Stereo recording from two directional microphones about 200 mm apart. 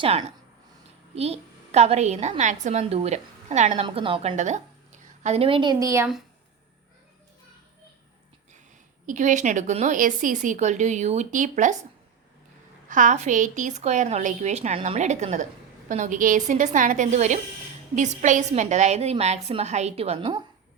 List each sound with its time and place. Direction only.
0.0 s a woman's voice: 30° right (ahead or behind)
3.8 s a woman's voice: 25° right (ahead or behind)
9.0 s a woman's voice: 40° right (ahead or behind)
12.9 s a woman's voice: 40° right (ahead or behind)